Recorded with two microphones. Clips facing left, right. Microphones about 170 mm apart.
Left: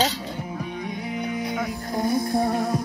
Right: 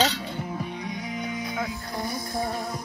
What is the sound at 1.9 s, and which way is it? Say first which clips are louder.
Music: left 8 dB; 55° left (ahead or behind).